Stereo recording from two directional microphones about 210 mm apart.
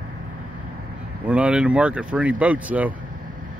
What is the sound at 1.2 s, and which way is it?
Speech, 5° right (ahead or behind).